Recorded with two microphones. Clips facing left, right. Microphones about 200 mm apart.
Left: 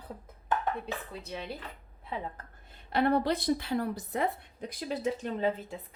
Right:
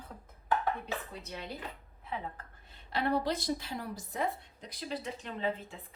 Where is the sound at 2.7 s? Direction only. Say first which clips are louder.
Left 5 dB; 55° left (ahead or behind).